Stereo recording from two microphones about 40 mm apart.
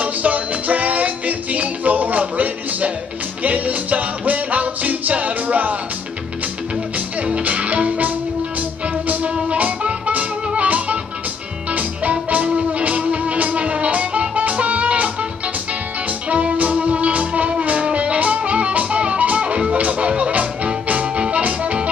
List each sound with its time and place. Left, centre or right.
0.0 s music: right
7.2 s music: right
16.3 s music: right